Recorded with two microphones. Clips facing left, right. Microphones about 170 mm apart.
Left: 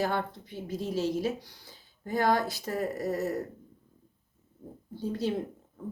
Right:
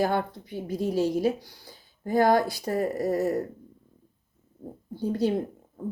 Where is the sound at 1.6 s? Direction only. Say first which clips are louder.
Right 7 dB; 40° right (ahead or behind).